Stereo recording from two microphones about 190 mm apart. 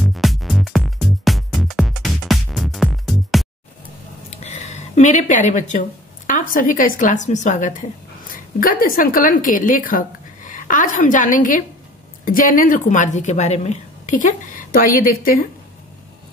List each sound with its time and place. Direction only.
0.0 s music: centre (ahead or behind)
4.3 s a woman's voice: 35° left (ahead or behind)